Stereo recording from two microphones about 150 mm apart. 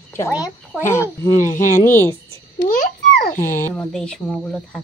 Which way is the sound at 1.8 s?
15° left (ahead or behind).